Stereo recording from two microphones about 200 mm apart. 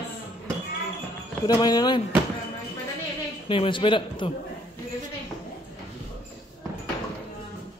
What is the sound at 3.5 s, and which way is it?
Speech, 25° left (ahead or behind).